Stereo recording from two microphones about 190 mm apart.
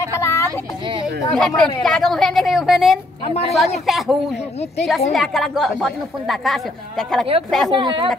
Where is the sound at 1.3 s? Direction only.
Centre (ahead or behind).